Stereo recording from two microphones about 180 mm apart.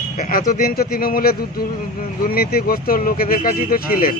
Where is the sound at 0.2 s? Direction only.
50° left (ahead or behind).